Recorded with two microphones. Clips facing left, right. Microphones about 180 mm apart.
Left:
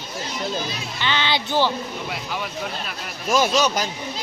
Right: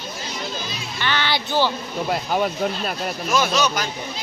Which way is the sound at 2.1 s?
45° right (ahead or behind).